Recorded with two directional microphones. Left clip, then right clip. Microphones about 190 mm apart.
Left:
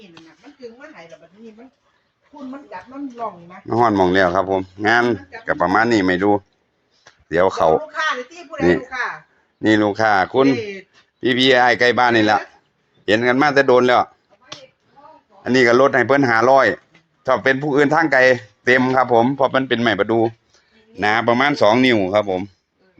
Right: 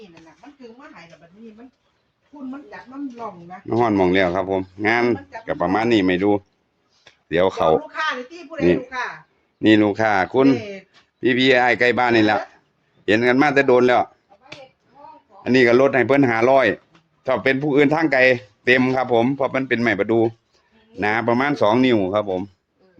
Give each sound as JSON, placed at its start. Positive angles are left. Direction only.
{"t": 3.7, "sound": "speech", "side_deg": -5}
{"t": 7.0, "sound": "a sound", "side_deg": -10}
{"t": 8.4, "sound": "speech", "side_deg": 25}
{"t": 9.6, "sound": "speech", "side_deg": -15}
{"t": 15.4, "sound": "speech", "side_deg": -10}